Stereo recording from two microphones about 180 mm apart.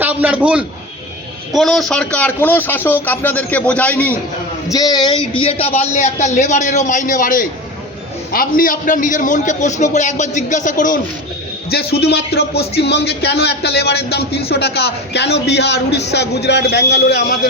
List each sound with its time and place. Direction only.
0.0 s a man's voice: 10° right (ahead or behind); by 4.1 s 10° left (ahead or behind)
4.7 s a man's voice: 20° left (ahead or behind); by 11.0 s 45° left (ahead or behind)
11.7 s a man's voice: 60° left (ahead or behind)